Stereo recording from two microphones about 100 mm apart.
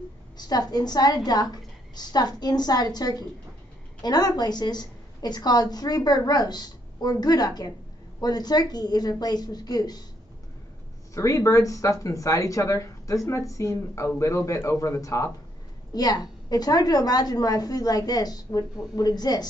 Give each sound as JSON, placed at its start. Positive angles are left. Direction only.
{"t": 0.4, "sound": "a woman's voice", "side_deg": 40}
{"t": 11.1, "sound": "speech", "side_deg": 30}